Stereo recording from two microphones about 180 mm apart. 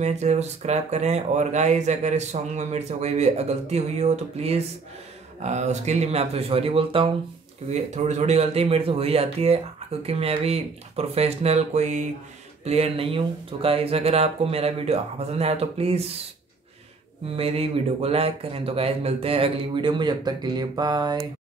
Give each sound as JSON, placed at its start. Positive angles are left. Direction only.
{"t": 0.0, "sound": "speech", "side_deg": -40}
{"t": 17.4, "sound": "speech", "side_deg": -35}